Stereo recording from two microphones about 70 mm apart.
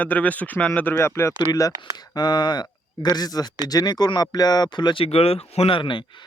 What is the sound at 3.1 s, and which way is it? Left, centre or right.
Speech, left.